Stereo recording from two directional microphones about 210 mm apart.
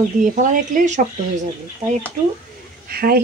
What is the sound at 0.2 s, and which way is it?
Speech, 40° right (ahead or behind).